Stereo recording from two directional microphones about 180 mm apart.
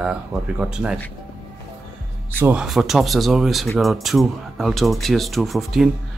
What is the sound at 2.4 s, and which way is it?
Speech, 5° right (ahead or behind).